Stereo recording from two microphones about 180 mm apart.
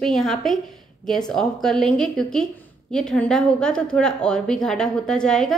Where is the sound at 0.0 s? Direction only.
Centre (ahead or behind).